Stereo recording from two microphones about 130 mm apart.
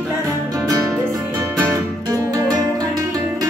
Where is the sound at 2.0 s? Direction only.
30° right (ahead or behind).